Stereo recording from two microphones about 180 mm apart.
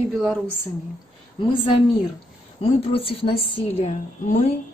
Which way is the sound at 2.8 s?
30° left (ahead or behind).